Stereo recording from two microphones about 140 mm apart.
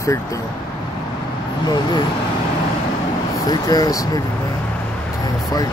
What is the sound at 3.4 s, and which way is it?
Speech, 25° left (ahead or behind).